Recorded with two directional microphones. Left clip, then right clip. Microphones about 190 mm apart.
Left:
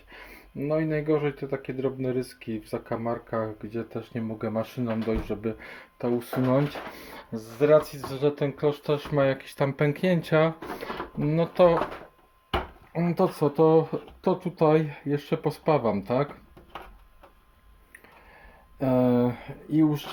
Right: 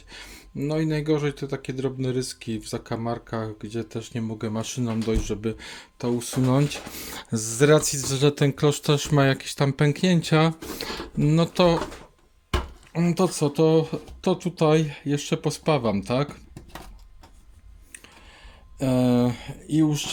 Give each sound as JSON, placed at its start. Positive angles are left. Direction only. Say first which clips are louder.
{"t": 0.1, "sound": "speech", "louder": "right 3 dB", "side_deg": -25}
{"t": 6.9, "sound": "speech", "louder": "right 6 dB", "side_deg": -45}
{"t": 12.9, "sound": "speech", "louder": "right 1 dB", "side_deg": -20}
{"t": 18.8, "sound": "speech", "louder": "even", "side_deg": -20}